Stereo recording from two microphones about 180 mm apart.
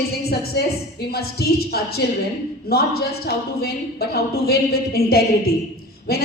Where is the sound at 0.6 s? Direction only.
60° left (ahead or behind).